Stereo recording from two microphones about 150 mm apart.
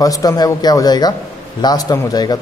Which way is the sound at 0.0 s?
25° left (ahead or behind).